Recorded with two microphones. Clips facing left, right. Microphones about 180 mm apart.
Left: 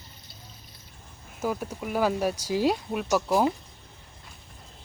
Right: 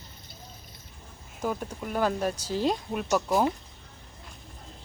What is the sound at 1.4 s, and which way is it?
Speech, 5° left (ahead or behind).